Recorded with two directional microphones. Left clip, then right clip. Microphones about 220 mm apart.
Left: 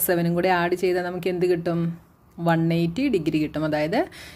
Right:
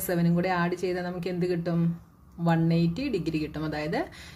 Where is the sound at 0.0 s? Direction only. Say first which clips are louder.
Left 6 dB; 35° left (ahead or behind).